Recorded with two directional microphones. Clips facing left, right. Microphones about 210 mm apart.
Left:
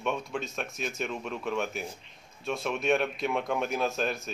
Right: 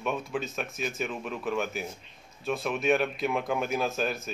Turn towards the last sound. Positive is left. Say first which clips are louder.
# even
turn(degrees=0)  # may be behind; listen again after turning